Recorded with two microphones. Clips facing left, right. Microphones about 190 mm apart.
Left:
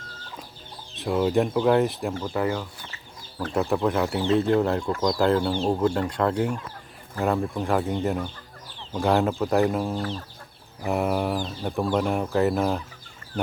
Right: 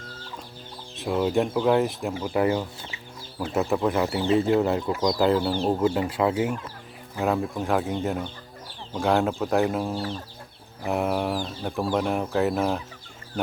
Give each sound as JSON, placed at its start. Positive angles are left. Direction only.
{"t": 0.9, "sound": "speech", "side_deg": 0}
{"t": 2.2, "sound": "speech", "side_deg": -15}